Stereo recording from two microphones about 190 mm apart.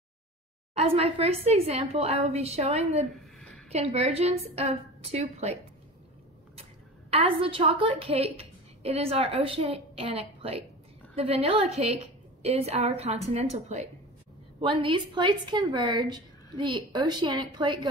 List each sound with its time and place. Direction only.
0.7 s a woman's voice: 30° right (ahead or behind)
3.1 s a sound: centre (ahead or behind)
3.7 s a woman's voice: 35° right (ahead or behind)
7.1 s a woman's voice: 30° right (ahead or behind)